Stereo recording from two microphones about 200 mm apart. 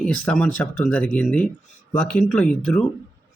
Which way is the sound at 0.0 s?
5° left (ahead or behind).